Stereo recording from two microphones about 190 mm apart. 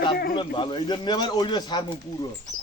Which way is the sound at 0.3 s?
25° left (ahead or behind).